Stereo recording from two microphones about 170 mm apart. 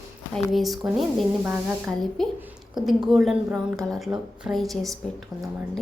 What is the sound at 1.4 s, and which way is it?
Speech, 10° right (ahead or behind).